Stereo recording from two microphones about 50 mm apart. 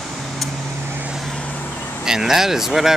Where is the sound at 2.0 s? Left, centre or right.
Centre.